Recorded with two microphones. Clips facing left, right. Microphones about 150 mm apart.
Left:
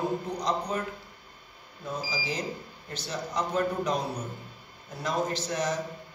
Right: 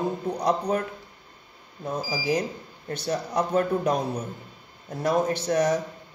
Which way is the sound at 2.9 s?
60° right (ahead or behind).